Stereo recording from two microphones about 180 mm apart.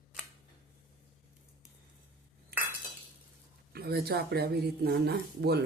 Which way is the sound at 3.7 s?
60° right (ahead or behind).